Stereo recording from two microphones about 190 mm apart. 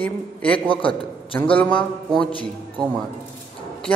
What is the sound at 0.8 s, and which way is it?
Speech, 25° left (ahead or behind).